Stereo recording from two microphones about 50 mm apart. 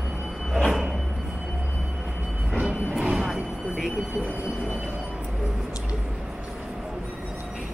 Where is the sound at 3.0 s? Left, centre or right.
Centre.